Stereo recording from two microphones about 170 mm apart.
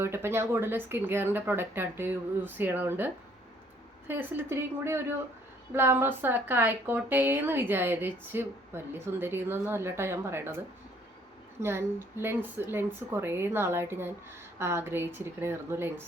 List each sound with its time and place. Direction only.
0.0 s a woman's voice: 15° right (ahead or behind)
11.6 s a woman's voice: 15° right (ahead or behind)